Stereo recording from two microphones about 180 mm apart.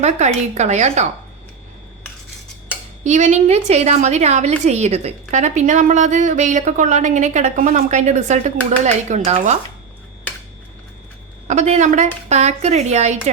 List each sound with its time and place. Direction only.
0.0 s a woman's voice: 40° right (ahead or behind)
3.0 s a woman's voice: 40° right (ahead or behind)
11.4 s a woman's voice: 40° right (ahead or behind)